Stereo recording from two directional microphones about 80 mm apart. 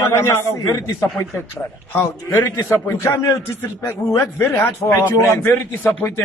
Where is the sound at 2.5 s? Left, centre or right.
Left.